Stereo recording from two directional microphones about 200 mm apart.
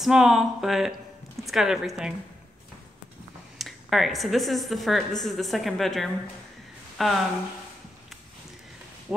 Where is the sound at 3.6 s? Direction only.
Centre (ahead or behind).